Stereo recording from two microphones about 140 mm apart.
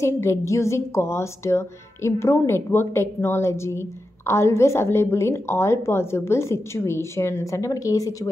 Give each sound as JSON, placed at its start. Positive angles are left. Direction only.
{"t": 0.0, "sound": "a woman's voice", "side_deg": 20}